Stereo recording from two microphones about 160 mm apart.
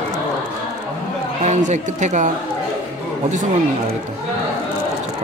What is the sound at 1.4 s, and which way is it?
Speech, 45° right (ahead or behind).